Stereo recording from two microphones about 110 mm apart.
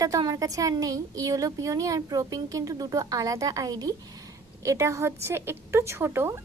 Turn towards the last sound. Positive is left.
turn(degrees=-20)  # may be behind; listen again after turning